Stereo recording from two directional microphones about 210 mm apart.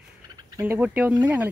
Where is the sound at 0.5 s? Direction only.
10° right (ahead or behind).